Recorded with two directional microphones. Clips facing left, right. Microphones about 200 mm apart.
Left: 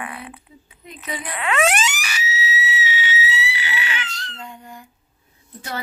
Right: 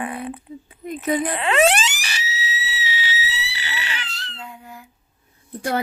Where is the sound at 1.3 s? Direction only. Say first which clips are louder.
Even; 30° right (ahead or behind).